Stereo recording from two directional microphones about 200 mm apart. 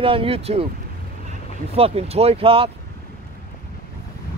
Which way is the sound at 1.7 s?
30° right (ahead or behind).